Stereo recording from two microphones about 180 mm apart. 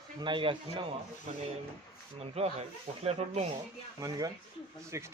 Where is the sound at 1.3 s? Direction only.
40° right (ahead or behind).